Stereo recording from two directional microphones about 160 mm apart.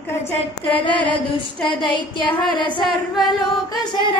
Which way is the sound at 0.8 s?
10° left (ahead or behind).